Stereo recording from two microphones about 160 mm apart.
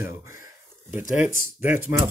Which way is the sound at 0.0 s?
15° right (ahead or behind).